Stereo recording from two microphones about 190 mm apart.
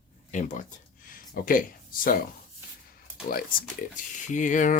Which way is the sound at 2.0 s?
45° left (ahead or behind).